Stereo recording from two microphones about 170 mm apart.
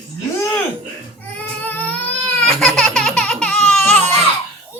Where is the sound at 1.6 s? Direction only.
10° left (ahead or behind).